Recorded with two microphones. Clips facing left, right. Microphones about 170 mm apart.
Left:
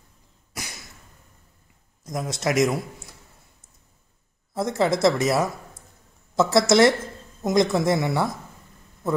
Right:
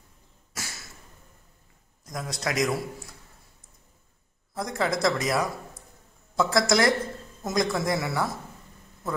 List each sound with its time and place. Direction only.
0.6 s a sound: 15° left (ahead or behind)
2.0 s speech: 20° left (ahead or behind)
4.6 s speech: 25° left (ahead or behind)